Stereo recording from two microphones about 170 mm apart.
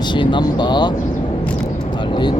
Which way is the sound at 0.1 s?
25° left (ahead or behind).